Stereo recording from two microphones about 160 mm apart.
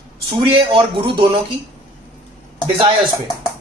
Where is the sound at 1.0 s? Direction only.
30° right (ahead or behind).